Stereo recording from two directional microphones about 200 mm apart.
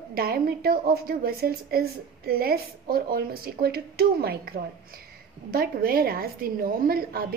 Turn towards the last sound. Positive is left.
turn(degrees=-50)  # may be behind; listen again after turning